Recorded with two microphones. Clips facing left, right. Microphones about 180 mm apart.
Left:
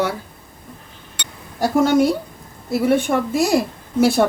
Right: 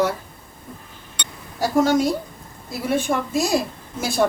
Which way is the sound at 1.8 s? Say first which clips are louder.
Left 3 dB; 60° left (ahead or behind).